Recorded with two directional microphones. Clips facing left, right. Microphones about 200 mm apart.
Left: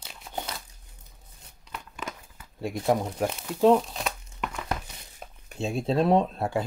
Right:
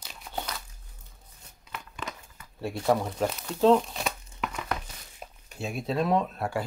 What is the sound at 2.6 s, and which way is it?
Speech, 15° left (ahead or behind).